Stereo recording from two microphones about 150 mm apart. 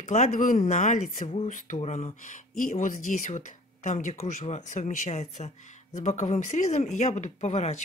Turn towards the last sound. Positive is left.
turn(degrees=50)  # may be behind; listen again after turning